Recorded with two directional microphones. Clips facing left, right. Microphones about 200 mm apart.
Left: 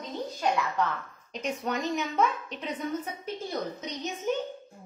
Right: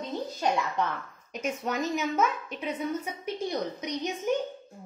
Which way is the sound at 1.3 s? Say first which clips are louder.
Even; 5° right (ahead or behind).